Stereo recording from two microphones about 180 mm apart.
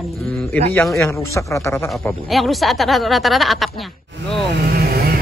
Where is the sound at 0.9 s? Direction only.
15° left (ahead or behind).